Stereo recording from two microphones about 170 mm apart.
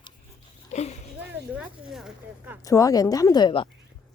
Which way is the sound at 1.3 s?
5° right (ahead or behind).